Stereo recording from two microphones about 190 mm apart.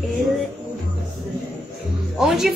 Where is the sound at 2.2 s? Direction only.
Centre (ahead or behind).